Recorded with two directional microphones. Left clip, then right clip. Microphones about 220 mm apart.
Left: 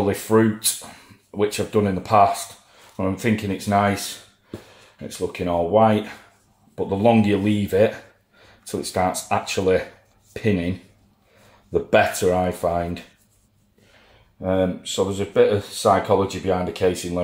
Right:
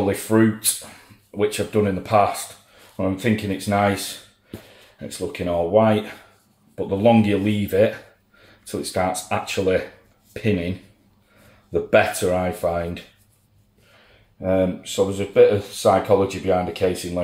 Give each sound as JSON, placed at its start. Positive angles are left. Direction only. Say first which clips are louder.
{"t": 0.0, "sound": "speech", "louder": "even", "side_deg": 20}
{"t": 5.0, "sound": "speech", "louder": "left 1 dB", "side_deg": 20}
{"t": 11.9, "sound": "speech", "louder": "even", "side_deg": 25}
{"t": 14.4, "sound": "speech", "louder": "right 1 dB", "side_deg": 15}